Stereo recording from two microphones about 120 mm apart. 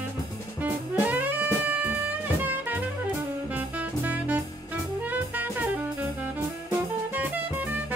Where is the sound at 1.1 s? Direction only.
15° right (ahead or behind).